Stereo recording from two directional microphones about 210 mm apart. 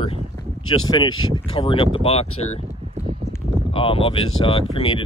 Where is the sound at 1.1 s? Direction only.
75° left (ahead or behind).